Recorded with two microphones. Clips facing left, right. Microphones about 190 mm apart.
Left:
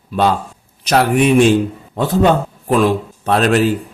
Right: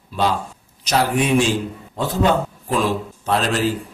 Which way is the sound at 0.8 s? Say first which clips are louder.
Left 6 dB; 60° left (ahead or behind).